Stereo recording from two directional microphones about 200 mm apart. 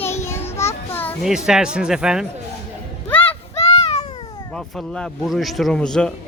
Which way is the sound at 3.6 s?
30° left (ahead or behind).